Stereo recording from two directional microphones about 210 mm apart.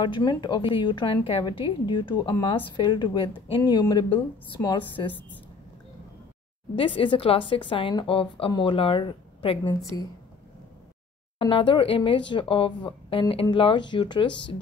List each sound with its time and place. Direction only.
0.0 s a woman's voice: 20° left (ahead or behind)
6.7 s a woman's voice: 25° left (ahead or behind)
11.3 s a woman's voice: 25° left (ahead or behind)